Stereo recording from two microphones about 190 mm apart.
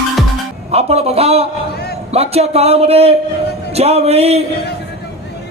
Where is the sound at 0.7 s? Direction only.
35° right (ahead or behind).